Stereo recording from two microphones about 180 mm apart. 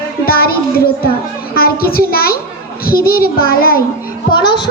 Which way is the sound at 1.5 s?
55° left (ahead or behind).